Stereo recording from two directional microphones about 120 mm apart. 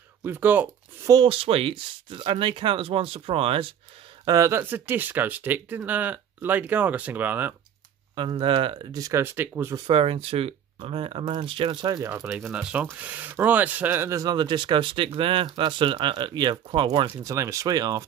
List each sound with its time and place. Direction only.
0.2 s speech: 15° right (ahead or behind)
1.2 s speech: 50° right (ahead or behind)
4.2 s speech: 30° right (ahead or behind)
8.2 s speech: 45° right (ahead or behind)
8.9 s speech: 25° right (ahead or behind)
9.8 s speech: 50° right (ahead or behind)
12.0 s speech: 25° right (ahead or behind)
12.3 s speech: 5° right (ahead or behind); by 14.3 s 25° right (ahead or behind)
14.3 s speech: 40° right (ahead or behind)
17.2 s speech: 25° right (ahead or behind)